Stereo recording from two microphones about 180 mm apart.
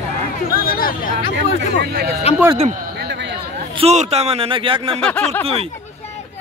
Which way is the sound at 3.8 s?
35° right (ahead or behind).